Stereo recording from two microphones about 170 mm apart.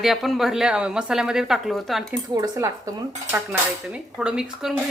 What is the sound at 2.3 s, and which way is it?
Speech, 20° right (ahead or behind).